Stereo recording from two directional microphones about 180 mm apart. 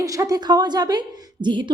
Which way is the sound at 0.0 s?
20° right (ahead or behind).